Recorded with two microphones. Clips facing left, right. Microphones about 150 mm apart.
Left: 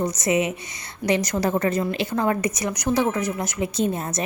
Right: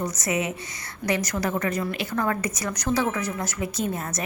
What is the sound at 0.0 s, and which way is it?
A woman's voice, 20° left (ahead or behind).